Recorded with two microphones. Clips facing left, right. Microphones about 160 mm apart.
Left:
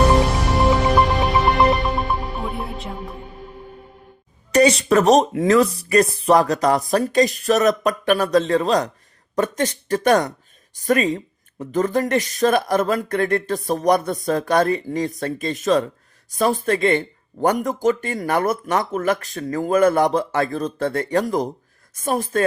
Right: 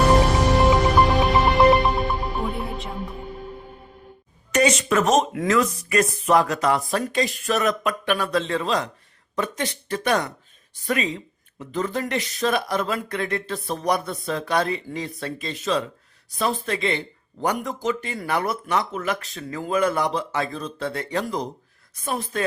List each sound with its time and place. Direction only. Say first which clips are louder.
0.5 s music: left 2 dB; centre (ahead or behind)
4.5 s speech: left 5 dB; 35° left (ahead or behind)